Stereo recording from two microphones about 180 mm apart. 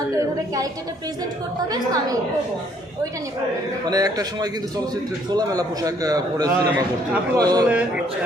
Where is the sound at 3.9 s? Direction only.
20° right (ahead or behind).